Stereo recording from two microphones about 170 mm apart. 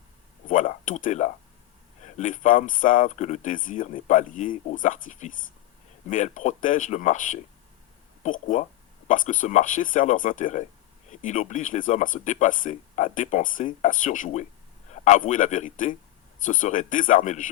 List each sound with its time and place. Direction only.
0.4 s speech: 50° left (ahead or behind)